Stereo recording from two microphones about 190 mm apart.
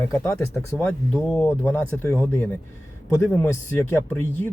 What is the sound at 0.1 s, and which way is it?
Speech, 15° left (ahead or behind).